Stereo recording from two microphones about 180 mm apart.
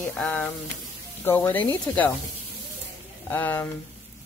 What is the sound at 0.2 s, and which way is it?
Speech, 5° left (ahead or behind).